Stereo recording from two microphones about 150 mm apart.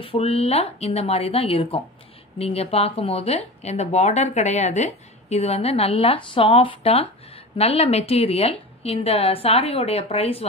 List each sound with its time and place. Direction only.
0.0 s speech: 40° left (ahead or behind)